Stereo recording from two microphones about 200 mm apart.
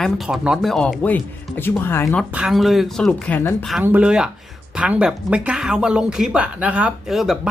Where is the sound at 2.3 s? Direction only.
5° right (ahead or behind).